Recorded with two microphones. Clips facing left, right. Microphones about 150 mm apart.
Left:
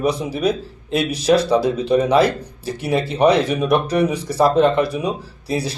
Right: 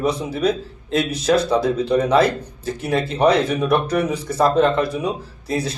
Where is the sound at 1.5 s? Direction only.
10° left (ahead or behind).